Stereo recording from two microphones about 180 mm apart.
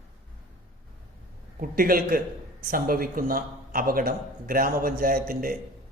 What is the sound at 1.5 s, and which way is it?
A man's voice, 55° right (ahead or behind).